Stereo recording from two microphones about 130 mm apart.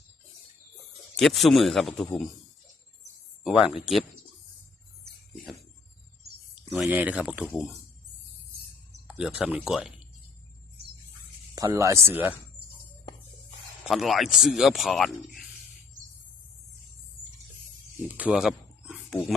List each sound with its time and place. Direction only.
1.1 s speech: centre (ahead or behind)
3.4 s speech: 5° right (ahead or behind)
6.9 s speech: 10° right (ahead or behind)
9.0 s speech: 5° right (ahead or behind)
11.5 s speech: 30° right (ahead or behind)
13.8 s speech: centre (ahead or behind)
18.2 s wild animals: 5° right (ahead or behind)